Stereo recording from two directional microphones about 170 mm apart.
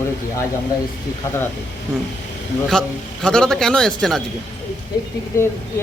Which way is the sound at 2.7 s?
5° left (ahead or behind).